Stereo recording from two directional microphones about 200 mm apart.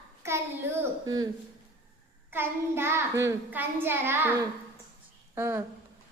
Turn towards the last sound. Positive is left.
turn(degrees=-10)  # may be behind; listen again after turning